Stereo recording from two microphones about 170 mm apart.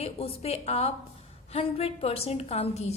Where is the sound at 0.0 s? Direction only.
35° left (ahead or behind).